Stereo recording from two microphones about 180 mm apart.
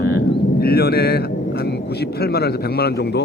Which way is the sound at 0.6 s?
60° left (ahead or behind).